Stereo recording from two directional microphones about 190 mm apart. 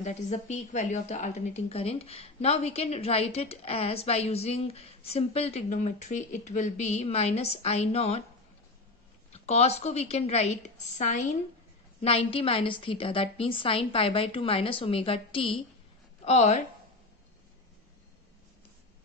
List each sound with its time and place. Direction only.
0.0 s a woman's voice: 40° left (ahead or behind)
9.3 s a woman's voice: 35° left (ahead or behind)